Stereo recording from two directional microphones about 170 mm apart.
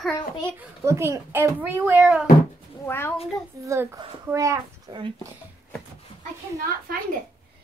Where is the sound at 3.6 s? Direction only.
15° right (ahead or behind).